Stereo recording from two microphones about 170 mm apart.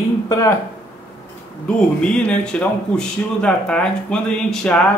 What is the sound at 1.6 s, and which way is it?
Speech, 5° left (ahead or behind).